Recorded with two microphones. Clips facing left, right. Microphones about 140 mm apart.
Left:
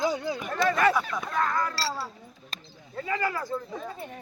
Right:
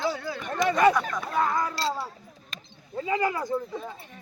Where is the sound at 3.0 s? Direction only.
20° right (ahead or behind).